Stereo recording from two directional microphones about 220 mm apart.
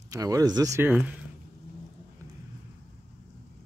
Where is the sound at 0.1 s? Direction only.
15° right (ahead or behind).